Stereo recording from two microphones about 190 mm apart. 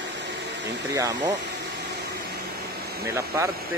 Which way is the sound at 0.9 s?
15° right (ahead or behind).